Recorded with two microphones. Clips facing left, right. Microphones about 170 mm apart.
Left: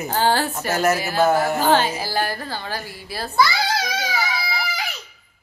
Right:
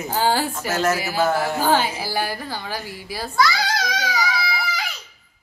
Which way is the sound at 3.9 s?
10° left (ahead or behind).